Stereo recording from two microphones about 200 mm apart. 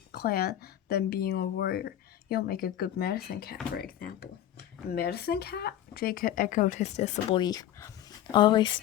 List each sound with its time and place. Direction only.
0.1 s speech: 50° left (ahead or behind); by 7.3 s 35° left (ahead or behind)
7.3 s speech: 20° left (ahead or behind)